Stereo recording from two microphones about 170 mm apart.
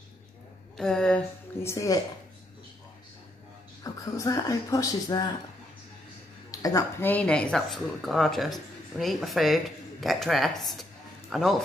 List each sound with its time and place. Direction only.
0.7 s speech: 5° left (ahead or behind)
1.6 s speech: 15° left (ahead or behind)
3.8 s speech: 20° left (ahead or behind)
6.5 s a woman's voice: 20° left (ahead or behind)
7.1 s speech: 5° left (ahead or behind)